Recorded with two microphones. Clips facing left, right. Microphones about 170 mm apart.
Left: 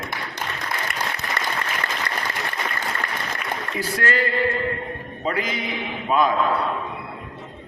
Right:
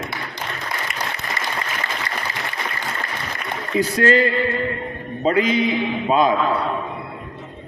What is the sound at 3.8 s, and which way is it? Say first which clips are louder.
A man's voice: right 8 dB; 20° right (ahead or behind).